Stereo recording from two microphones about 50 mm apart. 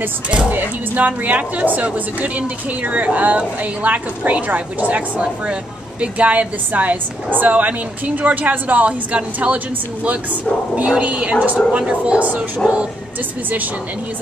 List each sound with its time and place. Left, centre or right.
0.5 s speech: right
11.0 s speech: right